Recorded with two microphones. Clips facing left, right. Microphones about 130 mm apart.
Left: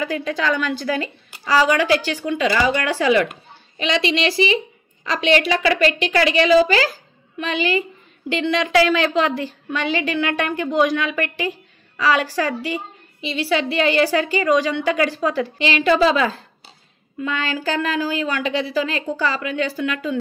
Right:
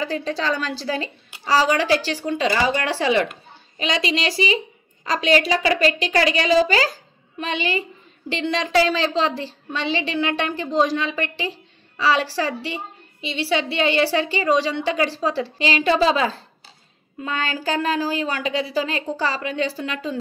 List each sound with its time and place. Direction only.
0.0 s a woman's voice: 30° right (ahead or behind)
12.6 s a sound: 40° left (ahead or behind)
13.4 s a woman's voice: 30° right (ahead or behind)